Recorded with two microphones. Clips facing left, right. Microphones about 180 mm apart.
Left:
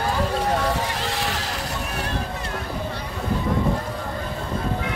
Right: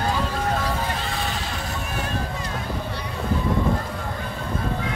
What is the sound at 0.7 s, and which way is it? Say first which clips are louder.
Vehicle: left 2 dB; 85° left.